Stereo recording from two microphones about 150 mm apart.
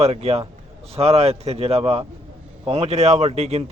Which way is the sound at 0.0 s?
45° right (ahead or behind).